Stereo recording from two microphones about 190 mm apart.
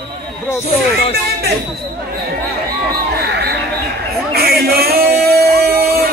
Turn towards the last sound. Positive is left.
turn(degrees=-55)  # may be behind; listen again after turning